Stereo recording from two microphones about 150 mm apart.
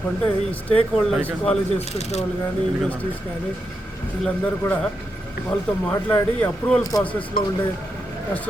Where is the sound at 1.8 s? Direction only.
45° left (ahead or behind).